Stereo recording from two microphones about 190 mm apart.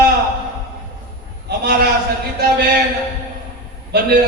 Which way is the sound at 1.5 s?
55° right (ahead or behind).